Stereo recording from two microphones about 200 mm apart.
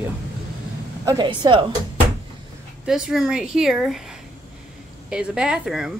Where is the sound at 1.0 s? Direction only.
20° right (ahead or behind).